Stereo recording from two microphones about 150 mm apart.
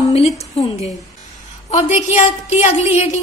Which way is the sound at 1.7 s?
50° left (ahead or behind).